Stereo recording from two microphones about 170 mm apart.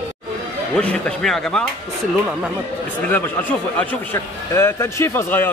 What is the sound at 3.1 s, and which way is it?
A man's voice, 10° left (ahead or behind).